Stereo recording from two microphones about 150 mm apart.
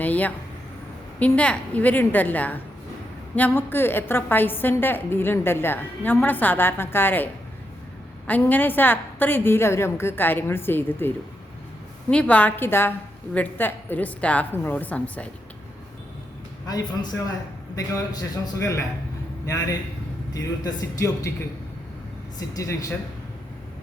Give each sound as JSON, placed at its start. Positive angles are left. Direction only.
{"t": 0.0, "sound": "a sound", "side_deg": 10}
{"t": 1.2, "sound": "a woman's voice", "side_deg": 10}
{"t": 8.3, "sound": "a woman's voice", "side_deg": 10}
{"t": 12.1, "sound": "a woman's voice", "side_deg": 10}
{"t": 16.6, "sound": "a man's voice", "side_deg": 25}
{"t": 22.4, "sound": "a man's voice", "side_deg": 20}